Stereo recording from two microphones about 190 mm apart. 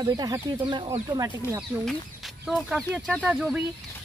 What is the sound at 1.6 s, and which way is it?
Speech, centre (ahead or behind).